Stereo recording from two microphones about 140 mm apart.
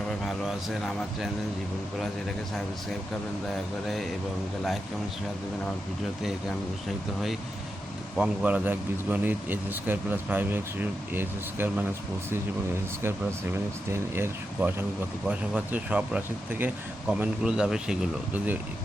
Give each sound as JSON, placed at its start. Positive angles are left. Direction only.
{"t": 0.3, "sound": "a man's voice", "side_deg": 0}
{"t": 3.8, "sound": "a man's voice", "side_deg": 0}
{"t": 8.2, "sound": "speech", "side_deg": -10}
{"t": 13.0, "sound": "speech", "side_deg": -20}